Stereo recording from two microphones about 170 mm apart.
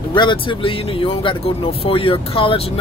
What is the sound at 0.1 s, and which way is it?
Speech, 30° left (ahead or behind).